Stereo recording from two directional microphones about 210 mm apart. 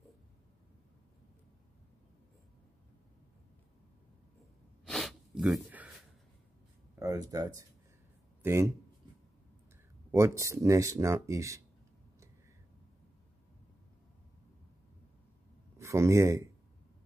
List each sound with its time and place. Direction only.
4.8 s snort: centre (ahead or behind)
7.0 s speech: 15° right (ahead or behind)
10.1 s speech: 15° right (ahead or behind)
15.8 s speech: 15° right (ahead or behind)